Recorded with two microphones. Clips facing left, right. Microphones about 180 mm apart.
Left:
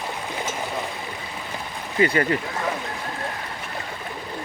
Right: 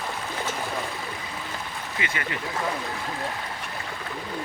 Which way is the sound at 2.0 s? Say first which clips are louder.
Left 13 dB; 40° left (ahead or behind).